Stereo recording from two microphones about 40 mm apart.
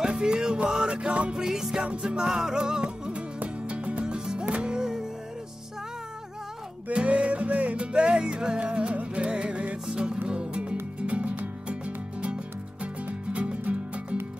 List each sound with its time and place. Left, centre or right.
0.1 s music: centre
1.4 s music: centre
3.1 s music: right
6.9 s music: right
11.0 s music: right